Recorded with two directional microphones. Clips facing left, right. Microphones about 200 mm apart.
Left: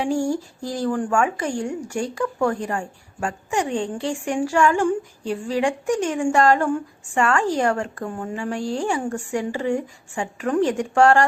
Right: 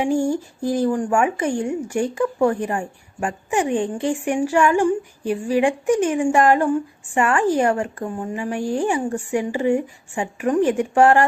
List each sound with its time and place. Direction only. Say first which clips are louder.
0.6 s a woman's voice: right 6 dB; 15° right (ahead or behind)